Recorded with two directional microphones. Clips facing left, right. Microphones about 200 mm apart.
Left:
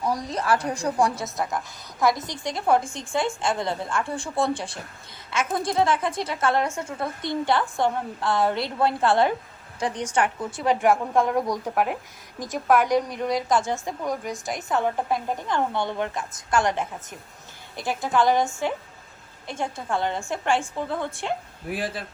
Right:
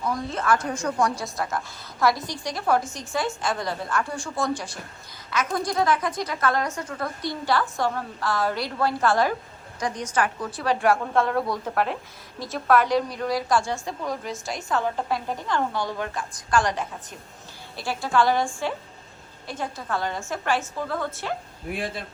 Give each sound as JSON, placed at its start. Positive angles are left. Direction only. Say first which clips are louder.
{"t": 0.0, "sound": "a woman's voice", "louder": "left 1 dB", "side_deg": 35}
{"t": 21.7, "sound": "a man's voice", "louder": "left 1 dB", "side_deg": 0}